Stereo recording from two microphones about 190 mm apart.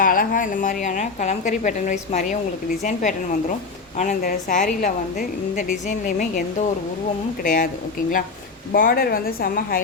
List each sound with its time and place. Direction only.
0.0 s a woman's voice: 45° left (ahead or behind)
8.7 s a woman's voice: 50° left (ahead or behind)